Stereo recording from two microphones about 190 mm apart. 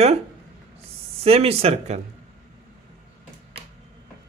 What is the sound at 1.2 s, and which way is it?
Speech, 30° right (ahead or behind).